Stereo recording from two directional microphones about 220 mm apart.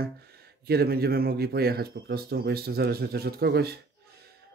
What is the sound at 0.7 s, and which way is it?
Speech, 45° right (ahead or behind).